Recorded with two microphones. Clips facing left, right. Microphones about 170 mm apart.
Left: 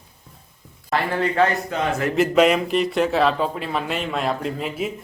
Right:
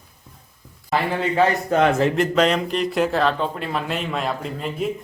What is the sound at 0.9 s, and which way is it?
Speech, centre (ahead or behind).